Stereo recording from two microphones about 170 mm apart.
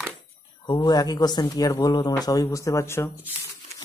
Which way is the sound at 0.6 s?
25° left (ahead or behind).